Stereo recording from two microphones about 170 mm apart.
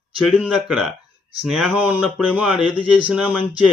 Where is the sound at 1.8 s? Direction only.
10° right (ahead or behind).